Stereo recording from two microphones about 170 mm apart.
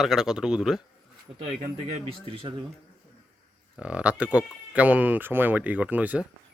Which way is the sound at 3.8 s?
5° right (ahead or behind).